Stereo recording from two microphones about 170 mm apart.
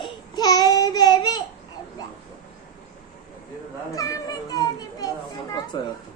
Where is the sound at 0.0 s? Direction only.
25° left (ahead or behind).